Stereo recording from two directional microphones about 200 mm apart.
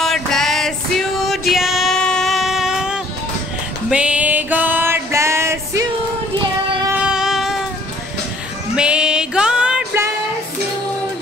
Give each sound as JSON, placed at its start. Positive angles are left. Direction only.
{"t": 0.0, "sound": "music", "side_deg": 0}
{"t": 7.0, "sound": "music", "side_deg": -5}
{"t": 8.7, "sound": "music", "side_deg": -5}